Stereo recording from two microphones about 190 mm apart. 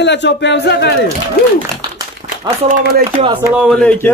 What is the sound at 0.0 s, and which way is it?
Speech, 65° left (ahead or behind).